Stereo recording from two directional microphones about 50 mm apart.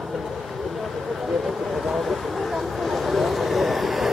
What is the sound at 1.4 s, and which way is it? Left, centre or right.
Vehicle, centre.